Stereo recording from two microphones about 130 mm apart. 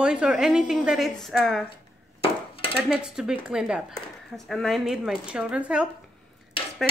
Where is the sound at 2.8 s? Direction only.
5° right (ahead or behind).